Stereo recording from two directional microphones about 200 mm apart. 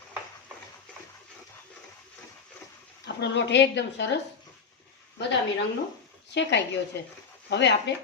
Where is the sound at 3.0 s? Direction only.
60° left (ahead or behind).